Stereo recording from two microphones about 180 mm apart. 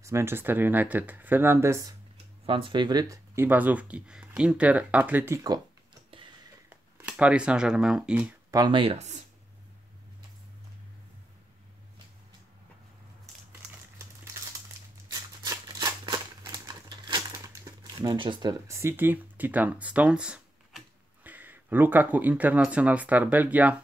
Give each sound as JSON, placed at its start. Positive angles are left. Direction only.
{"t": 0.0, "sound": "speech", "side_deg": -15}
{"t": 2.4, "sound": "speech", "side_deg": -30}
{"t": 6.7, "sound": "speech", "side_deg": -10}
{"t": 8.5, "sound": "speech", "side_deg": -25}
{"t": 15.1, "sound": "typewriter", "side_deg": -20}